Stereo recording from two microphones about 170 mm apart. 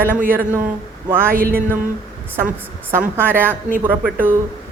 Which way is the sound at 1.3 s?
60° right (ahead or behind).